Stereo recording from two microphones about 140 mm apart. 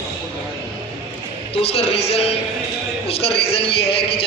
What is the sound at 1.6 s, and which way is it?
A man's voice, 45° left (ahead or behind).